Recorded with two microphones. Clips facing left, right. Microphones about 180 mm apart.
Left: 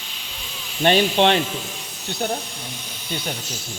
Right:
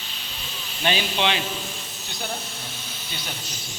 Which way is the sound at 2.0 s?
60° left (ahead or behind).